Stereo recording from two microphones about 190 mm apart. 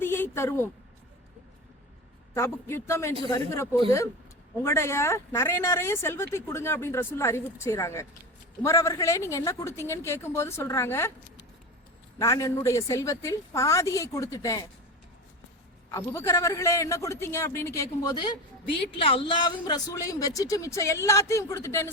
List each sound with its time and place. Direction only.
0.0 s a sound: 10° left (ahead or behind)
2.3 s speech: 15° left (ahead or behind)
12.2 s speech: 15° left (ahead or behind)
15.9 s speech: 15° left (ahead or behind)